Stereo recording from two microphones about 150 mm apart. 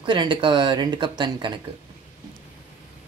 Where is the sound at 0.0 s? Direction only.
30° right (ahead or behind).